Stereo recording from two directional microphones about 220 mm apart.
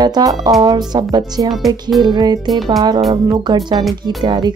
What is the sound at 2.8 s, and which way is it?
Speech, 20° right (ahead or behind).